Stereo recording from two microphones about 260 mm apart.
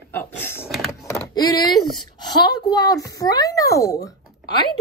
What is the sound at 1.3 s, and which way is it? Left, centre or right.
Speech, centre.